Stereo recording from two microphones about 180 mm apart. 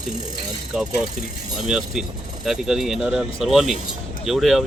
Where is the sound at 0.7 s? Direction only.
5° right (ahead or behind).